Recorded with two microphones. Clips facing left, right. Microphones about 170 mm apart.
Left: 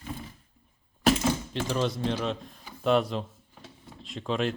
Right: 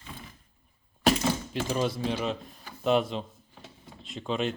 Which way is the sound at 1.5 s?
5° right (ahead or behind).